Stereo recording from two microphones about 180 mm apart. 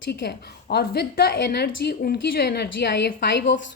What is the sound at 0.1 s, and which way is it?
A woman's voice, 65° left (ahead or behind).